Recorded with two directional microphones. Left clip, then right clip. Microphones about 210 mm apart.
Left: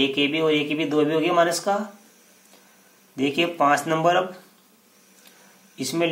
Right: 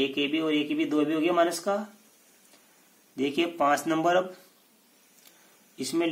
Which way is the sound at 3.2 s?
30° right (ahead or behind).